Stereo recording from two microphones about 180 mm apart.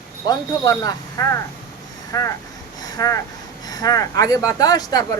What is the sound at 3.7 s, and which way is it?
Speech, 20° left (ahead or behind).